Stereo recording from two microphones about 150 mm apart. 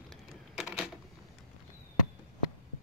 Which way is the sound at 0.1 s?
5° right (ahead or behind).